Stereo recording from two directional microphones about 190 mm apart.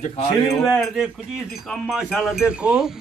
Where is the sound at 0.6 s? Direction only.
Centre (ahead or behind).